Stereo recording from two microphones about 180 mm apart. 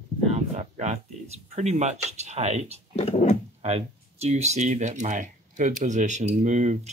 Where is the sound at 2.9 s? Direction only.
35° left (ahead or behind).